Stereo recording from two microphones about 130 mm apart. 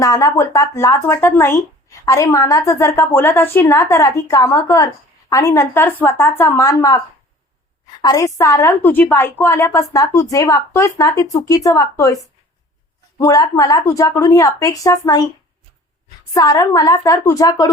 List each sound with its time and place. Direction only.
0.0 s a woman's voice: 25° left (ahead or behind)
8.0 s a woman's voice: 25° left (ahead or behind)
13.1 s a woman's voice: 30° left (ahead or behind)
16.3 s a woman's voice: 30° left (ahead or behind)